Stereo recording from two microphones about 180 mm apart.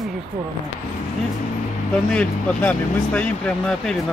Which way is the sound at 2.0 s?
5° left (ahead or behind).